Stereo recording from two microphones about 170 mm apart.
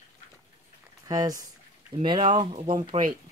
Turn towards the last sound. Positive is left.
turn(degrees=-25)  # may be behind; listen again after turning